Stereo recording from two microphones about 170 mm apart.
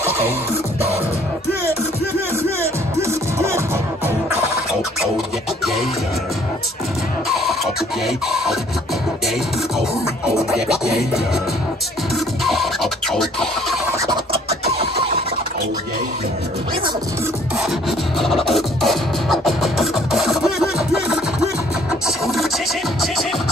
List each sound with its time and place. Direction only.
3.0 s music: 15° right (ahead or behind)
7.2 s music: centre (ahead or behind)
10.5 s music: 5° right (ahead or behind)
12.4 s scratching: centre (ahead or behind)
14.3 s scratching: 35° right (ahead or behind)
18.2 s music: centre (ahead or behind)
22.0 s vehicle: centre (ahead or behind)